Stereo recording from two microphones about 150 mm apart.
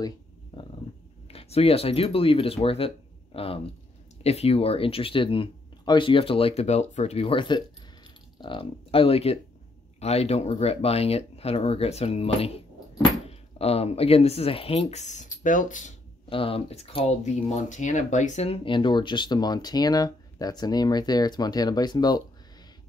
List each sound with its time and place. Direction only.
0.5 s a sound: 35° left (ahead or behind)
1.3 s speech: 40° left (ahead or behind); by 15.9 s 60° left (ahead or behind)
16.3 s speech: 35° left (ahead or behind)